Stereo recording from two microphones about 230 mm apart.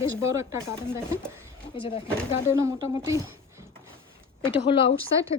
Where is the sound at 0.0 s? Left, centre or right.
Centre.